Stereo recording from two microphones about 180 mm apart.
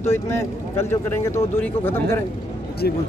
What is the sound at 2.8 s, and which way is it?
Speech, 60° left (ahead or behind).